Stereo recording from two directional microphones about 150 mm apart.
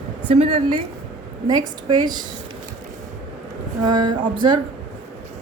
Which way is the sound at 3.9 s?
30° right (ahead or behind).